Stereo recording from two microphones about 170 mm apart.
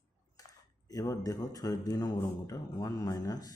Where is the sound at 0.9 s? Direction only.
20° left (ahead or behind).